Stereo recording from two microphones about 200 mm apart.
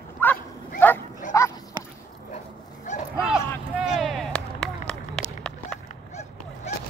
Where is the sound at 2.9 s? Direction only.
40° left (ahead or behind).